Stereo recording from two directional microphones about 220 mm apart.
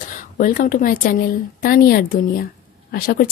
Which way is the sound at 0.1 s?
35° left (ahead or behind).